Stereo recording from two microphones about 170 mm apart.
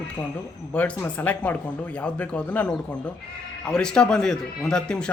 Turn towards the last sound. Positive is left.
turn(degrees=5)  # may be behind; listen again after turning